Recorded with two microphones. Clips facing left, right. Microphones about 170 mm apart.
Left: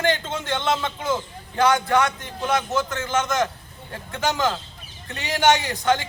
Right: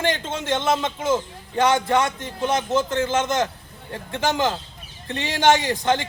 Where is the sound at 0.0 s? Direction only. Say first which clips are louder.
Left 1 dB; 25° right (ahead or behind).